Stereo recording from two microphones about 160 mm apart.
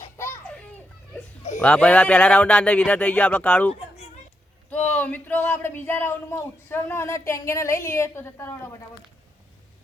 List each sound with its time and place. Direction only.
0.2 s children playing: 15° left (ahead or behind)
1.6 s speech: 10° left (ahead or behind)
3.8 s a sound: 40° left (ahead or behind)
4.7 s speech: 10° left (ahead or behind)